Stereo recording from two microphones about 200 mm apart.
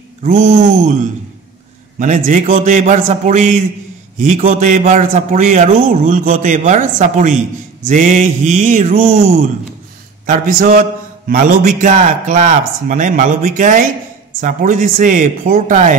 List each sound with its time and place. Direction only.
0.2 s speech: 45° right (ahead or behind)
2.0 s a man's voice: 40° right (ahead or behind)